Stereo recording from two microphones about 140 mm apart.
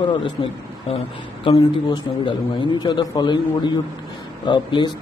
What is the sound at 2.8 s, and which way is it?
A man's voice, 30° left (ahead or behind).